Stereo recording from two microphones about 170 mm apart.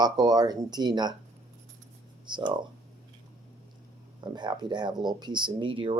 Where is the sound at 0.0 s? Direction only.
25° right (ahead or behind).